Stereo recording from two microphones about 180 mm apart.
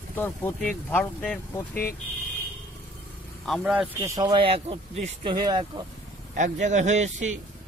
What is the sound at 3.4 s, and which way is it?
Speech, 5° right (ahead or behind).